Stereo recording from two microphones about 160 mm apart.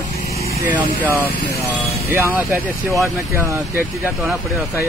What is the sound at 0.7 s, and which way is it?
Speech, 10° right (ahead or behind).